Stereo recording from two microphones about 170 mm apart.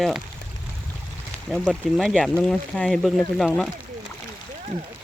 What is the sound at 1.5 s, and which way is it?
Speech, centre (ahead or behind).